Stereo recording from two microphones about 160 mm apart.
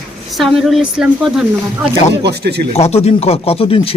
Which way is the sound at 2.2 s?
90° right.